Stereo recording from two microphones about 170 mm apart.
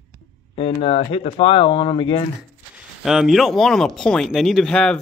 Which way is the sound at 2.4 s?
5° right (ahead or behind).